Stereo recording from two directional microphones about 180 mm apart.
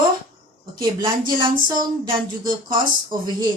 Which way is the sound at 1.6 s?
25° right (ahead or behind).